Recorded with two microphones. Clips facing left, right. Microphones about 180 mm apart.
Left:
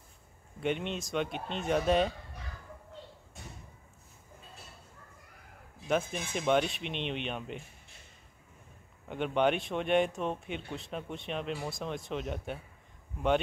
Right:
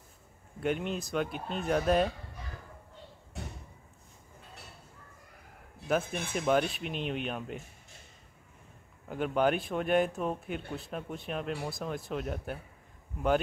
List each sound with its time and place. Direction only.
0.6 s speech: centre (ahead or behind)
5.8 s a sound: 65° right (ahead or behind)
6.3 s speech: centre (ahead or behind)
9.0 s speech: centre (ahead or behind)